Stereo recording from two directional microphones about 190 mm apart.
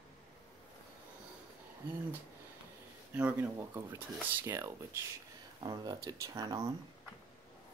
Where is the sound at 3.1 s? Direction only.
10° right (ahead or behind).